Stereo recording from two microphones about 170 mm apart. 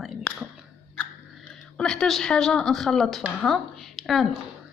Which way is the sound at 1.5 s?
5° left (ahead or behind).